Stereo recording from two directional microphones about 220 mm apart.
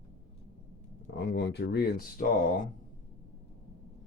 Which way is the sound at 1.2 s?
50° left (ahead or behind).